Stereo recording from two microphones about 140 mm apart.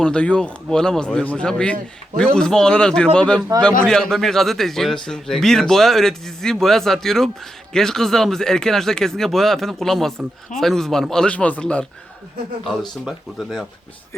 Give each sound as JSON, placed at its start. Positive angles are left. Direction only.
{"t": 0.0, "sound": "speech", "side_deg": 5}
{"t": 13.1, "sound": "speech", "side_deg": 0}